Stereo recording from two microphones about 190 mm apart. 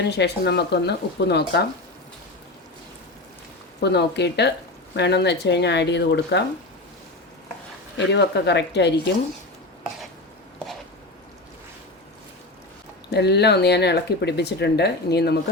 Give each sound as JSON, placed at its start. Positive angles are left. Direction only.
{"t": 0.0, "sound": "speech", "side_deg": 60}
{"t": 3.8, "sound": "speech", "side_deg": 60}
{"t": 7.9, "sound": "speech", "side_deg": 65}
{"t": 13.1, "sound": "speech", "side_deg": 60}